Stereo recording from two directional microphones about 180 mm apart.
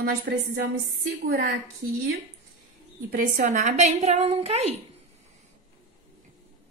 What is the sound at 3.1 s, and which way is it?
A woman's voice, 50° right (ahead or behind).